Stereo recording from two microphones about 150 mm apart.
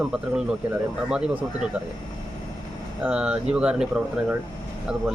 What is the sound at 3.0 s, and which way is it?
Speech, 5° right (ahead or behind).